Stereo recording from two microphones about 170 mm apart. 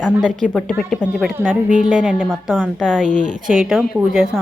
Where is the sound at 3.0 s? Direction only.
50° right (ahead or behind).